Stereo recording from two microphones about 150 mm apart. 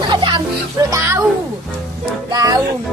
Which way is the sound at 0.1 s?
30° right (ahead or behind).